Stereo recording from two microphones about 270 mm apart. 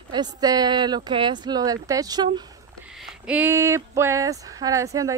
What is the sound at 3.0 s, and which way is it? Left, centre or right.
Speech, centre.